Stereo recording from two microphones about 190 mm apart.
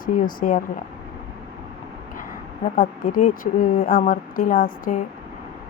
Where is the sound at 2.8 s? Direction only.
45° left (ahead or behind).